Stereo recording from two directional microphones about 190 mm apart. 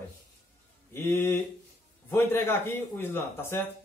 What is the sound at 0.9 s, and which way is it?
A man's voice, 10° left (ahead or behind).